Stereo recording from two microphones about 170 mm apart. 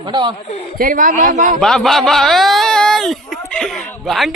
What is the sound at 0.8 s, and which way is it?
Speech, 55° right (ahead or behind).